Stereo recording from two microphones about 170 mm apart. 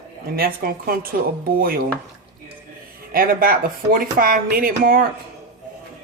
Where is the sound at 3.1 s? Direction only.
60° right (ahead or behind).